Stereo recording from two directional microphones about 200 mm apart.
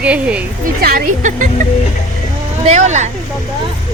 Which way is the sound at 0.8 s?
50° right (ahead or behind).